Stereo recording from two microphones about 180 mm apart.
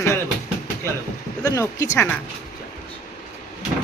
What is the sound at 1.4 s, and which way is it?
Speech, 20° left (ahead or behind).